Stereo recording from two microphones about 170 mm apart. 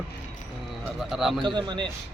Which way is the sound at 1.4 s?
25° right (ahead or behind).